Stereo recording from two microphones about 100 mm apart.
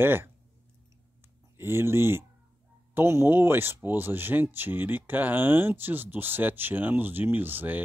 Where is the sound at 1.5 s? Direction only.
25° right (ahead or behind).